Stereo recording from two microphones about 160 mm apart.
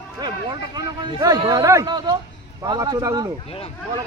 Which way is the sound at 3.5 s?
35° left (ahead or behind).